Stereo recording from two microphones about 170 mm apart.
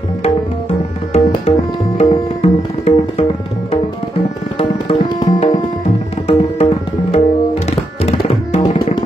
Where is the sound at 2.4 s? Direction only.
40° left (ahead or behind).